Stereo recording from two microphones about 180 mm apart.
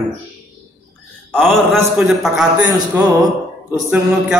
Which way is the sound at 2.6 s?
20° right (ahead or behind).